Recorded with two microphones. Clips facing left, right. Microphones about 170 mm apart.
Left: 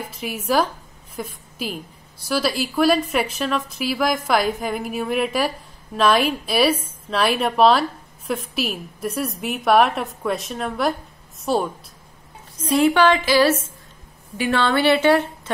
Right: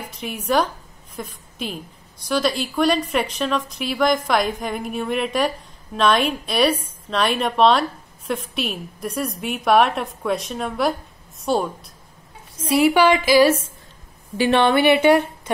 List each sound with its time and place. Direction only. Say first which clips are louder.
0.1 s a woman's voice: right 1 dB; 5° left (ahead or behind)
14.3 s a woman's voice: right 4 dB; 30° right (ahead or behind)
14.6 s a woman's voice: right 1 dB; 15° right (ahead or behind)